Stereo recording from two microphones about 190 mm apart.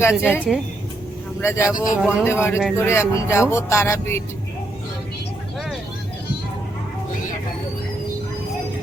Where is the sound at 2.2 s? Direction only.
15° left (ahead or behind).